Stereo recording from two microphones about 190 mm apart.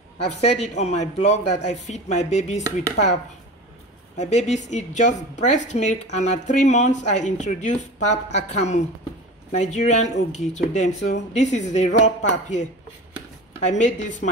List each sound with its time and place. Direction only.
0.4 s speech: 35° left (ahead or behind)
4.2 s speech: 35° left (ahead or behind)
13.7 s speech: 40° left (ahead or behind)